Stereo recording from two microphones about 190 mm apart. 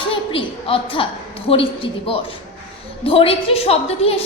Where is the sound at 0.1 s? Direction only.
30° left (ahead or behind).